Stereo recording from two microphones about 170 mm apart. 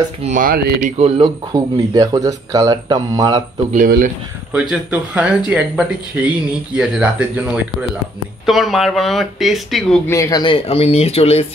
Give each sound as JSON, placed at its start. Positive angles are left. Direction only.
{"t": 0.2, "sound": "speech", "side_deg": -50}
{"t": 0.9, "sound": "speech", "side_deg": -35}
{"t": 1.5, "sound": "speech", "side_deg": -20}
{"t": 4.5, "sound": "speech", "side_deg": -5}
{"t": 10.0, "sound": "speech", "side_deg": 15}